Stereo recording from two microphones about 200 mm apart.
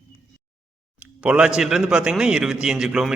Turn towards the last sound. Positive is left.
turn(degrees=-5)  # may be behind; listen again after turning